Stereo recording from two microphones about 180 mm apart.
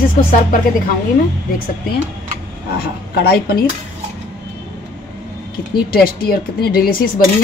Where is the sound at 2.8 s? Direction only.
60° left (ahead or behind).